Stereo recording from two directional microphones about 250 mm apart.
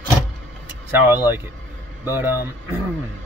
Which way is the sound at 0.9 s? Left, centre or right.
Centre.